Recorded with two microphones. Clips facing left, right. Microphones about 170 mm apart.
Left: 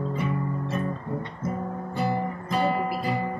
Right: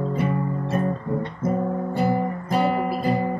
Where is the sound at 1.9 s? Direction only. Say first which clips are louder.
Right 3 dB; 50° right (ahead or behind).